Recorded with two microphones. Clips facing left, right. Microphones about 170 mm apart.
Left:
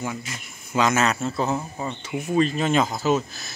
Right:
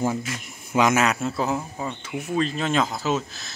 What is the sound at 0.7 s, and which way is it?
Speech, 15° right (ahead or behind).